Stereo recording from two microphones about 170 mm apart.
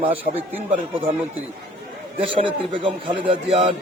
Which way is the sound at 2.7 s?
30° right (ahead or behind).